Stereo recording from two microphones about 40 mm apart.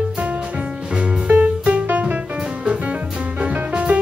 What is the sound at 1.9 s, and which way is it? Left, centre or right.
Music, right.